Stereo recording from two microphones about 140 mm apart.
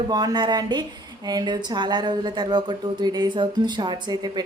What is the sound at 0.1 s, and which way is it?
Speech, 30° right (ahead or behind).